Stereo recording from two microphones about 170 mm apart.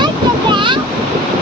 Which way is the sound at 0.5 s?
30° right (ahead or behind).